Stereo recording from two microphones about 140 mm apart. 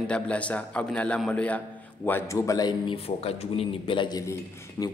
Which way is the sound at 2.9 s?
45° left (ahead or behind).